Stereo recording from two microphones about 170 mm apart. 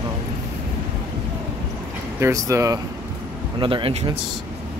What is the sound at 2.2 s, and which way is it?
Speech, 20° right (ahead or behind).